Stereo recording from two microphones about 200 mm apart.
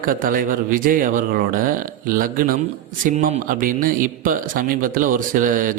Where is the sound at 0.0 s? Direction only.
45° right (ahead or behind).